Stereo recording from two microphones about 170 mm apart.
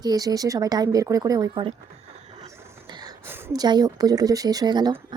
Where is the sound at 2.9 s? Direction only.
25° right (ahead or behind).